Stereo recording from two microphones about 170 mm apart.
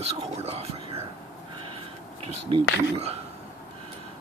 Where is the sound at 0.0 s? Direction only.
35° right (ahead or behind).